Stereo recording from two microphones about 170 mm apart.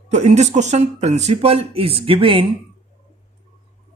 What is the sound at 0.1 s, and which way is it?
Speech, 40° right (ahead or behind).